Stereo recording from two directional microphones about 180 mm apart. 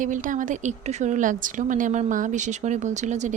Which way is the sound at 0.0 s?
45° right (ahead or behind).